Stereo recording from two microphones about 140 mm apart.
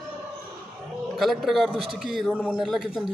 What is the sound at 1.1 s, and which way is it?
Speech, centre (ahead or behind).